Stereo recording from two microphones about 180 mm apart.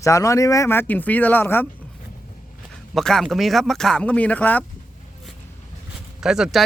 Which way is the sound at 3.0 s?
Centre (ahead or behind).